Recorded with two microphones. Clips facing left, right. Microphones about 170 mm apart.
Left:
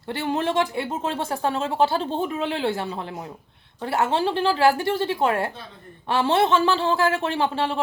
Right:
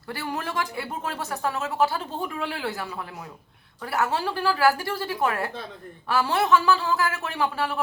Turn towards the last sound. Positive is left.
turn(degrees=25)  # may be behind; listen again after turning